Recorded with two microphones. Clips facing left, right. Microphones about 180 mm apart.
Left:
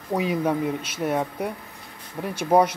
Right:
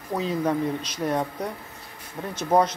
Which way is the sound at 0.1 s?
10° left (ahead or behind).